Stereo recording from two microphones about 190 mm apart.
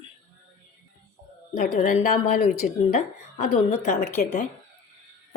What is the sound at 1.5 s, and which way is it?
A woman's voice, 45° left (ahead or behind).